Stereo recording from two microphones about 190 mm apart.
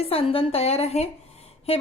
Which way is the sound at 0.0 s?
30° left (ahead or behind).